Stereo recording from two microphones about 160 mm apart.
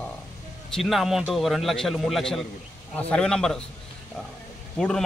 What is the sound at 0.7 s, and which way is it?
A man's voice, centre (ahead or behind).